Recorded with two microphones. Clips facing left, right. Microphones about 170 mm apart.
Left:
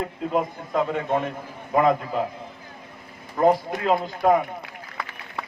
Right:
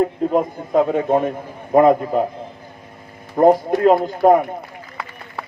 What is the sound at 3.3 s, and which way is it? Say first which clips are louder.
Speech: right 6 dB; 45° right (ahead or behind).